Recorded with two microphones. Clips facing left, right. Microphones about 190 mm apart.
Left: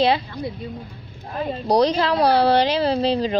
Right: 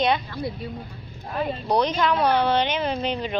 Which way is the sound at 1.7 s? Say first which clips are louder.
Left 4 dB; 35° left (ahead or behind).